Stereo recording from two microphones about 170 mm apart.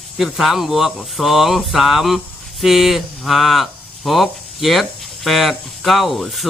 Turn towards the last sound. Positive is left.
turn(degrees=0)  # may be behind; listen again after turning